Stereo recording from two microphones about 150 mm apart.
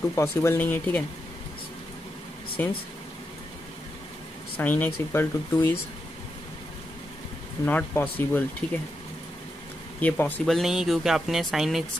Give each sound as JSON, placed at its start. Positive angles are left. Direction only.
{"t": 0.1, "sound": "speech", "side_deg": 20}
{"t": 2.6, "sound": "speech", "side_deg": 15}
{"t": 4.6, "sound": "speech", "side_deg": 15}
{"t": 7.6, "sound": "speech", "side_deg": 10}
{"t": 9.9, "sound": "speech", "side_deg": 10}
{"t": 10.4, "sound": "speech", "side_deg": 0}